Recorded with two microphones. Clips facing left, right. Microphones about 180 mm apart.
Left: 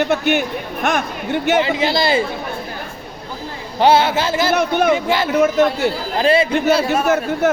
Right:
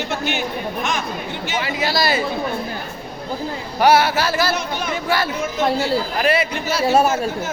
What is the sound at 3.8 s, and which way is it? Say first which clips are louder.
Speech: left 1 dB; 25° left (ahead or behind).